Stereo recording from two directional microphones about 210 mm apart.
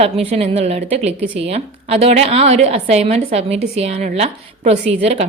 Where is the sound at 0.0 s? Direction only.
30° right (ahead or behind).